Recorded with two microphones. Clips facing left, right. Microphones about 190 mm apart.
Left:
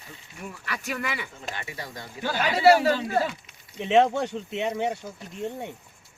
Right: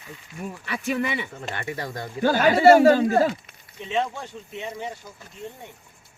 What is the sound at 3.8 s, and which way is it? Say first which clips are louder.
Speech: left 7 dB; 70° left (ahead or behind).